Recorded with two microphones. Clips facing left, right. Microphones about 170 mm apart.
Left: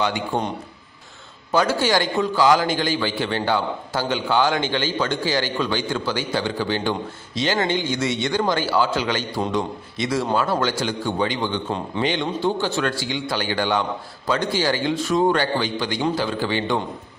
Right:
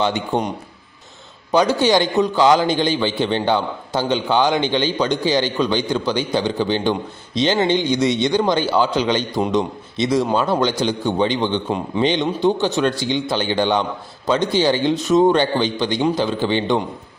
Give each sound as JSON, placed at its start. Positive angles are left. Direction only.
{"t": 0.0, "sound": "a man's voice", "side_deg": -20}
{"t": 1.5, "sound": "a man's voice", "side_deg": -15}